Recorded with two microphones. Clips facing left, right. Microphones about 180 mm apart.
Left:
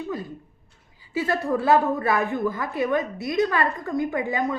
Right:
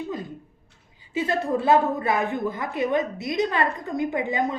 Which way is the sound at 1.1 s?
20° right (ahead or behind).